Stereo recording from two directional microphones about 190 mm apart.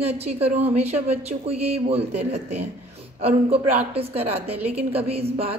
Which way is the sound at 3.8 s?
30° right (ahead or behind).